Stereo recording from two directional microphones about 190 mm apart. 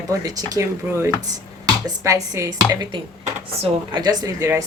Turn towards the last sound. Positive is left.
turn(degrees=-15)  # may be behind; listen again after turning